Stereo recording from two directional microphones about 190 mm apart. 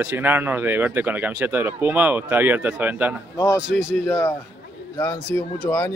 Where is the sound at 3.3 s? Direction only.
15° left (ahead or behind).